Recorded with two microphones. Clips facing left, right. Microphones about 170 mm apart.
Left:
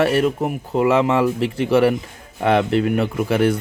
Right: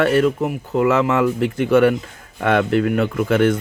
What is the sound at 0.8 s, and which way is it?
Speech, 30° left (ahead or behind).